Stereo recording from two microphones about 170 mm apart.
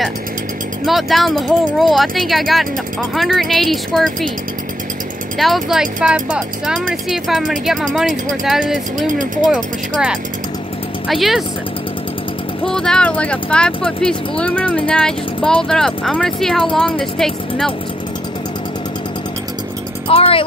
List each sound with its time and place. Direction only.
0.8 s speech: centre (ahead or behind)
5.4 s speech: centre (ahead or behind)
12.6 s speech: 5° left (ahead or behind)
20.1 s speech: 35° left (ahead or behind)